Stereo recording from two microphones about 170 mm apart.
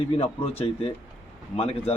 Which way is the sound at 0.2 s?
35° left (ahead or behind).